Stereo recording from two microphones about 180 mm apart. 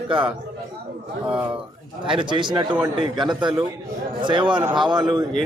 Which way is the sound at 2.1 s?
25° right (ahead or behind).